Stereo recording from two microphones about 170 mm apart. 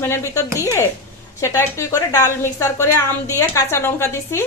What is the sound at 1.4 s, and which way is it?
A woman's voice, 15° left (ahead or behind).